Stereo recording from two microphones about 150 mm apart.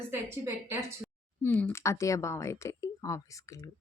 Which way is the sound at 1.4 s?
10° left (ahead or behind).